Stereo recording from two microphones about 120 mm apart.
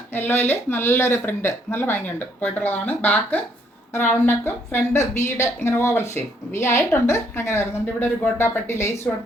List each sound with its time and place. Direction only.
0.1 s speech: 15° left (ahead or behind)